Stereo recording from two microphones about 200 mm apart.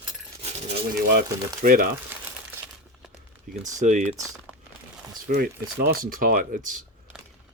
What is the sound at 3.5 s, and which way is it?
Speech, 40° right (ahead or behind).